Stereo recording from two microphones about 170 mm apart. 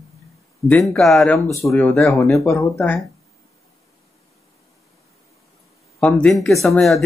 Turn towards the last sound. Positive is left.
turn(degrees=0)  # may be behind; listen again after turning